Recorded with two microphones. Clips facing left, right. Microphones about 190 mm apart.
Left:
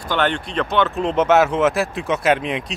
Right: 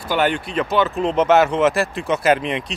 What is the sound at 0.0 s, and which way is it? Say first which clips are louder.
Speech: right 1 dB; 10° right (ahead or behind).